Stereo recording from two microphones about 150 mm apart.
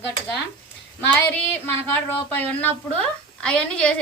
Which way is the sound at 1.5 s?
15° left (ahead or behind).